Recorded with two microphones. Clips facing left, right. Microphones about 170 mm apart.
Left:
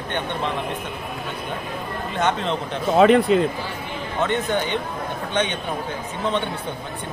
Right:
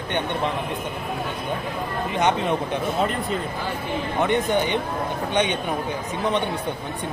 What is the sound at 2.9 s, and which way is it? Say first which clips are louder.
Speech: left 15 dB; 80° left.